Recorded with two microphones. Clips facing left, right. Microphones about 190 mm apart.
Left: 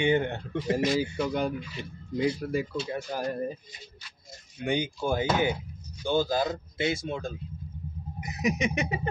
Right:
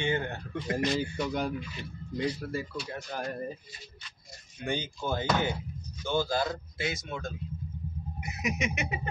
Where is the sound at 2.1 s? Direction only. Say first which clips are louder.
Left 5 dB; 10° left (ahead or behind).